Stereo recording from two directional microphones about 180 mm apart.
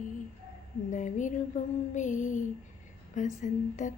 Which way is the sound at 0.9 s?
45° left (ahead or behind).